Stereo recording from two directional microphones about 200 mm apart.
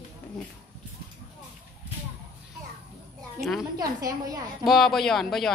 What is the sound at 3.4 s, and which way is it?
Speech, centre (ahead or behind).